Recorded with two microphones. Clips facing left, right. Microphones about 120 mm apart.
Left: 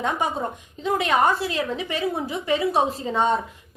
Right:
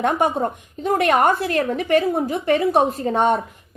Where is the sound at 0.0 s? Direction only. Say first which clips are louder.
Right 6 dB; 60° right (ahead or behind).